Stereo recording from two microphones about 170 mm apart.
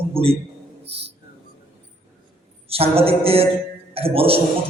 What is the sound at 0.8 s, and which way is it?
Music, 85° right.